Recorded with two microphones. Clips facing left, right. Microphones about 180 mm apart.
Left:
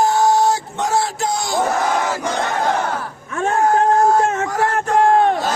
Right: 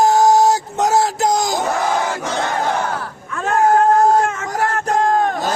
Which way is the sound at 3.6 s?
40° right (ahead or behind).